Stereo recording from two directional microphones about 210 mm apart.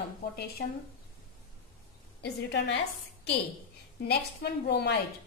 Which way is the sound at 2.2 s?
55° left (ahead or behind).